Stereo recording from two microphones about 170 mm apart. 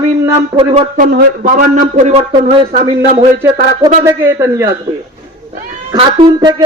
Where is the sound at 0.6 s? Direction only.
35° right (ahead or behind).